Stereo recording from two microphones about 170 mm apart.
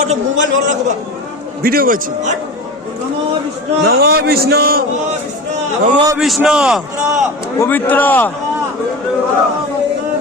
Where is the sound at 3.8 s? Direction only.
70° right (ahead or behind).